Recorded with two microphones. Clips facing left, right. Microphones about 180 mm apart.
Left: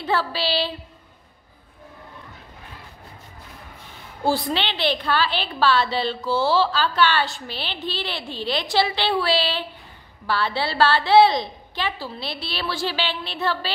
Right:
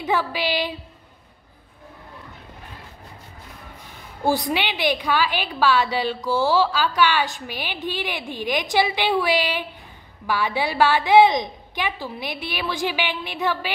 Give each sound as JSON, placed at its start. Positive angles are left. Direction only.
{"t": 0.0, "sound": "a woman's voice", "side_deg": -15}
{"t": 4.2, "sound": "a woman's voice", "side_deg": -15}